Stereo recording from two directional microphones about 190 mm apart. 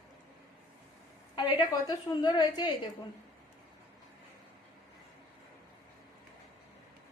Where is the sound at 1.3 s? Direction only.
20° left (ahead or behind).